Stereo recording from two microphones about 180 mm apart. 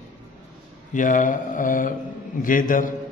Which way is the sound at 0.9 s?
45° left (ahead or behind).